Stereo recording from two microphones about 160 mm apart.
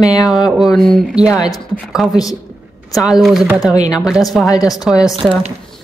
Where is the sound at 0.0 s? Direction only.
20° left (ahead or behind).